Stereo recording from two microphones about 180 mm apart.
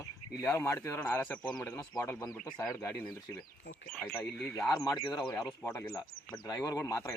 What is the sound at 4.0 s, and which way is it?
Speech, 5° left (ahead or behind).